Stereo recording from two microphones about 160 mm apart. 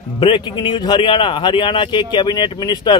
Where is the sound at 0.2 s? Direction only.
30° left (ahead or behind).